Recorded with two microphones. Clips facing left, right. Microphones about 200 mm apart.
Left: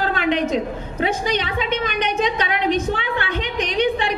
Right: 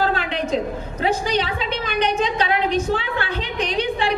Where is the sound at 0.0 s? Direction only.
35° right (ahead or behind).